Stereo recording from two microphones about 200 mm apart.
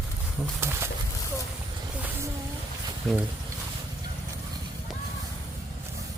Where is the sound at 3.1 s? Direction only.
5° left (ahead or behind).